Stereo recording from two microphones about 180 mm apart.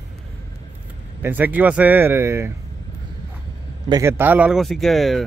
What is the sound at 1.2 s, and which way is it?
Speech, 10° right (ahead or behind).